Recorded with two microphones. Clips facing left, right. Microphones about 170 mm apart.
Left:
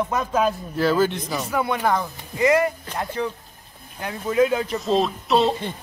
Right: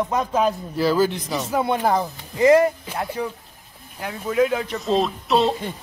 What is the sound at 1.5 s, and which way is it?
Speech, 25° right (ahead or behind).